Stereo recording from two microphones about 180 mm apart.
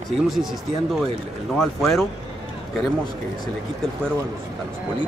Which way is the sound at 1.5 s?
Centre (ahead or behind).